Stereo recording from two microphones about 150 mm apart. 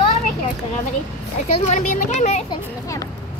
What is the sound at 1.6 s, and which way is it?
Speech, 50° left (ahead or behind).